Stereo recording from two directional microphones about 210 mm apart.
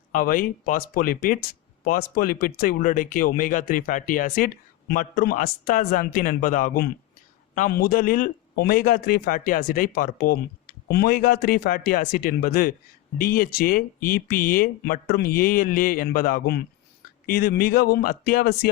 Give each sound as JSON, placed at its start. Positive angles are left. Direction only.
{"t": 0.1, "sound": "a man's voice", "side_deg": 40}